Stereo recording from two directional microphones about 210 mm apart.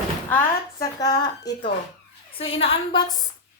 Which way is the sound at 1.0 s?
20° left (ahead or behind).